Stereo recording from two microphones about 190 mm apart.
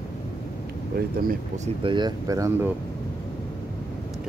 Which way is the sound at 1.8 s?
25° right (ahead or behind).